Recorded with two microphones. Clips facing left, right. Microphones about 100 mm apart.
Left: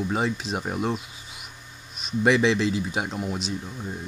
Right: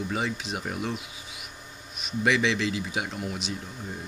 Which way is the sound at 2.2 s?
40° left (ahead or behind).